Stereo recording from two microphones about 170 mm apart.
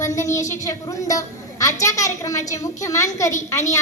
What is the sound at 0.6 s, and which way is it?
A woman's voice, 20° left (ahead or behind).